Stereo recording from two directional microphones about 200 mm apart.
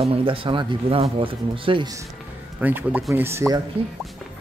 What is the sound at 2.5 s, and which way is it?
Speech, 10° right (ahead or behind).